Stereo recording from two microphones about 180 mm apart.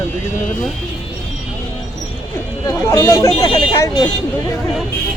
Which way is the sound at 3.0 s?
15° left (ahead or behind).